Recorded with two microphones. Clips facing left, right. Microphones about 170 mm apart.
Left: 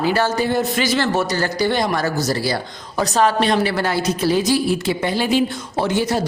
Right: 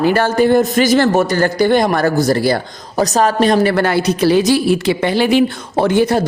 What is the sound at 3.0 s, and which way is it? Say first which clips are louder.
A woman's voice: right 4 dB; 40° right (ahead or behind).